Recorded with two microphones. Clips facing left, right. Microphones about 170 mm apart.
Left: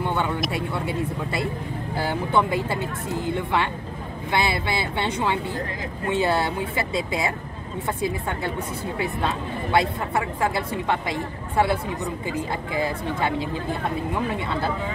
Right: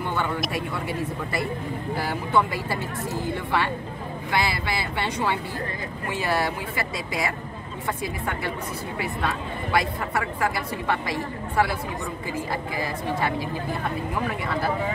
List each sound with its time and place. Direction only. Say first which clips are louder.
0.5 s a woman's voice: left 2 dB; 25° left (ahead or behind)
8.9 s a woman's voice: left 2 dB; 25° left (ahead or behind)